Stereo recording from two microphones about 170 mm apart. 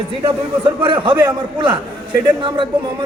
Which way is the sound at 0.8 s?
30° right (ahead or behind).